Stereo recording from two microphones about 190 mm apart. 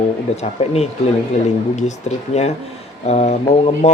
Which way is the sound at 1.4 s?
35° left (ahead or behind).